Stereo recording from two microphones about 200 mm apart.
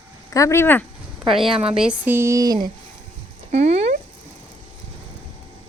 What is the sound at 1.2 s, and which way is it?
Speech, 25° right (ahead or behind).